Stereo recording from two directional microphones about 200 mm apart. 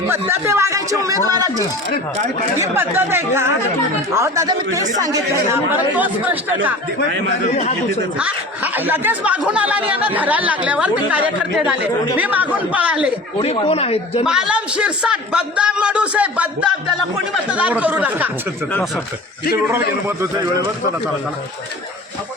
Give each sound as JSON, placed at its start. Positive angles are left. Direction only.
{"t": 0.1, "sound": "speech", "side_deg": -10}
{"t": 2.6, "sound": "speech", "side_deg": -10}
{"t": 8.2, "sound": "speech", "side_deg": -10}
{"t": 13.4, "sound": "speech", "side_deg": 30}
{"t": 14.3, "sound": "a man's voice", "side_deg": -5}